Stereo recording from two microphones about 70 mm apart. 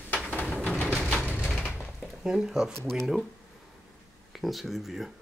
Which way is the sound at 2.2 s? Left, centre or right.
Centre.